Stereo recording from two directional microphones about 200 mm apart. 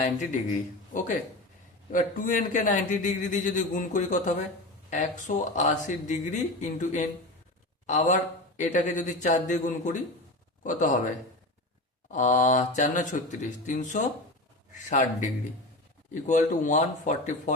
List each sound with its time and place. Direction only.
0.0 s a man's voice: 35° left (ahead or behind)
1.9 s a man's voice: 40° left (ahead or behind)
12.1 s a man's voice: 40° left (ahead or behind)
16.2 s a man's voice: 40° left (ahead or behind)